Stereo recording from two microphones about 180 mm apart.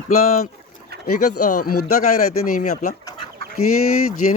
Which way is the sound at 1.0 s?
55° left (ahead or behind).